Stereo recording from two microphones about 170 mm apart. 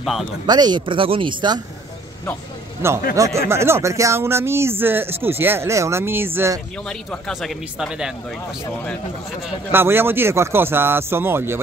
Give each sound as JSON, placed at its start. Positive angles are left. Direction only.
{"t": 0.5, "sound": "speech", "side_deg": -25}
{"t": 2.8, "sound": "speech", "side_deg": -15}
{"t": 6.9, "sound": "speech", "side_deg": 5}
{"t": 9.7, "sound": "speech", "side_deg": -15}